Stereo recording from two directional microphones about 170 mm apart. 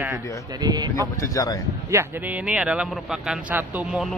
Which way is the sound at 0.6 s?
25° right (ahead or behind).